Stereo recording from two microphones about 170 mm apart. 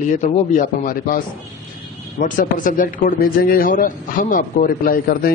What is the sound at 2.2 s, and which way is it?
A man's voice, 50° left (ahead or behind).